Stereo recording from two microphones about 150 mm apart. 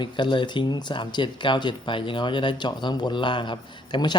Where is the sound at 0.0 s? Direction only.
30° left (ahead or behind).